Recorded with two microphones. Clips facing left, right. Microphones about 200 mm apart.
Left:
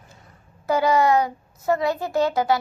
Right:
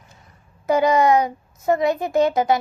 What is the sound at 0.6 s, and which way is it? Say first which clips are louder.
A child's voice: right 2 dB; 20° right (ahead or behind).